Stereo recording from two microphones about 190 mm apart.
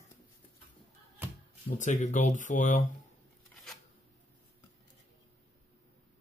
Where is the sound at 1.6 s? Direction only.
40° left (ahead or behind).